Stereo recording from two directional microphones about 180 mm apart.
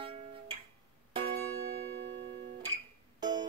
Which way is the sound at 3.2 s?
20° right (ahead or behind).